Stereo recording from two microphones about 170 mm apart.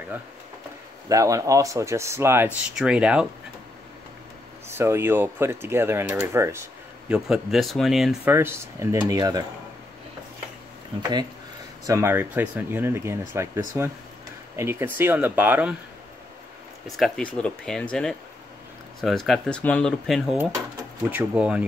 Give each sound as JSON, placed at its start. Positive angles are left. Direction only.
{"t": 1.0, "sound": "speech", "side_deg": -20}
{"t": 4.6, "sound": "speech", "side_deg": -15}
{"t": 7.1, "sound": "speech", "side_deg": -5}
{"t": 8.3, "sound": "speech", "side_deg": -15}
{"t": 11.0, "sound": "speech", "side_deg": -25}
{"t": 16.8, "sound": "speech", "side_deg": 0}
{"t": 18.9, "sound": "speech", "side_deg": 0}